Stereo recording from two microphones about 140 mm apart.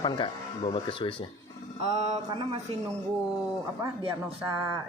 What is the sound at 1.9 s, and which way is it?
Mantra, 50° right (ahead or behind).